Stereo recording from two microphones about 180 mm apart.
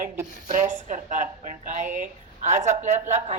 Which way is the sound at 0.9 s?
45° right (ahead or behind).